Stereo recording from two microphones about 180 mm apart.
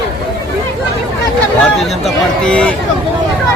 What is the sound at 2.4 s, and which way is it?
Speech, 5° left (ahead or behind).